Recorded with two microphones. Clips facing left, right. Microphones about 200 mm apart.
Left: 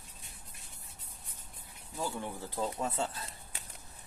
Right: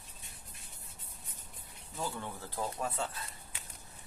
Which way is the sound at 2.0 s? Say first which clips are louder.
Left 2 dB; 15° left (ahead or behind).